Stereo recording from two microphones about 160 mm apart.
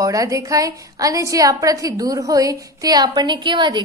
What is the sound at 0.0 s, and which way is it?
A woman's voice, 20° right (ahead or behind).